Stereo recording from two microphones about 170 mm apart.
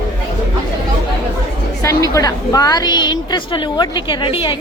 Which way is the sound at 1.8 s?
20° left (ahead or behind).